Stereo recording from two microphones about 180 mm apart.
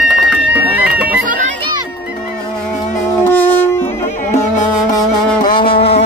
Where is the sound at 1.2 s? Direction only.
45° right (ahead or behind).